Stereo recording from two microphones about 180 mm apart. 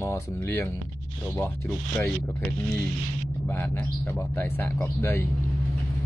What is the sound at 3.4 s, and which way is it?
Speech, 15° left (ahead or behind).